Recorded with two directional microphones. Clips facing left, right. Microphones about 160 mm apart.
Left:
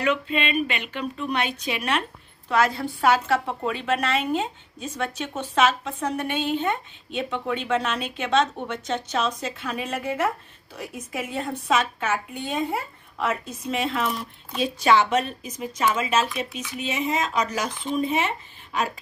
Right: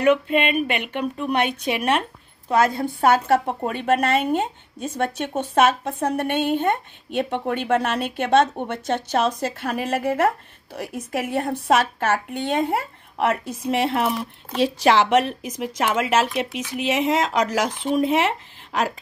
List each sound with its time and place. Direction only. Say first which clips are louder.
0.0 s a woman's voice: right 6 dB; 55° right (ahead or behind); by 18.9 s 85° right